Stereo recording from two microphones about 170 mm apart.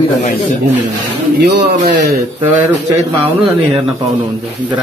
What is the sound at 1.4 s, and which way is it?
Speech, 75° right (ahead or behind).